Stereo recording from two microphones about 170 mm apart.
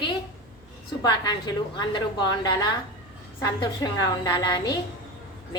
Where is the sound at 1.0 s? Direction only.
25° left (ahead or behind).